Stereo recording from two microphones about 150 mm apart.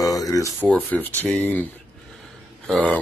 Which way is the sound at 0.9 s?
10° left (ahead or behind).